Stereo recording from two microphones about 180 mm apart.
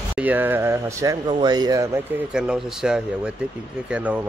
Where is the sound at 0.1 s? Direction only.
10° right (ahead or behind).